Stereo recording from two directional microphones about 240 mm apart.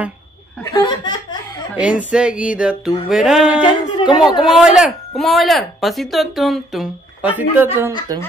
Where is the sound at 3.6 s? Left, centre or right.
Left.